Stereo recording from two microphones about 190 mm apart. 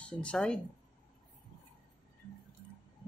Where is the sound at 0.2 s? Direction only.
5° left (ahead or behind).